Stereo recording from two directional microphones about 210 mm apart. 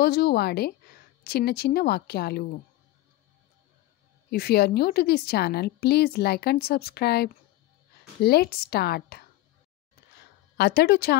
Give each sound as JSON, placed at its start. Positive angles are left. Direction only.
{"t": 0.0, "sound": "a woman's voice", "side_deg": 50}
{"t": 4.3, "sound": "a woman's voice", "side_deg": 50}
{"t": 10.6, "sound": "a woman's voice", "side_deg": 50}